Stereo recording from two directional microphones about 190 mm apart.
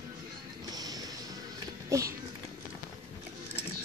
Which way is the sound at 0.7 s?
20° right (ahead or behind).